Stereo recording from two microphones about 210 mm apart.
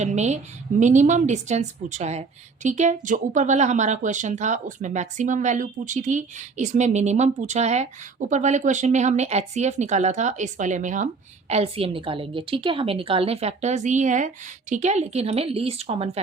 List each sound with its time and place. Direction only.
0.0 s a woman's voice: 35° right (ahead or behind)